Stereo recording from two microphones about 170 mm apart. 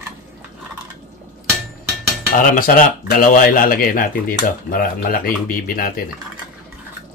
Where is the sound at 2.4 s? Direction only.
50° left (ahead or behind).